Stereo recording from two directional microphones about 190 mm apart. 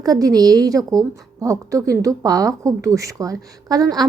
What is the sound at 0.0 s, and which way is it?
A woman's voice, 20° right (ahead or behind).